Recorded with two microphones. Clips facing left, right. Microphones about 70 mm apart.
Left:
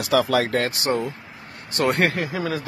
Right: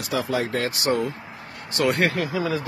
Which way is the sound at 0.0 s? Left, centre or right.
Left.